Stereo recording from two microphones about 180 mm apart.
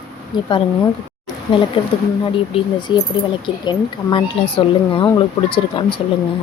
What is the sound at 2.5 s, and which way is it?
Speech, 25° left (ahead or behind).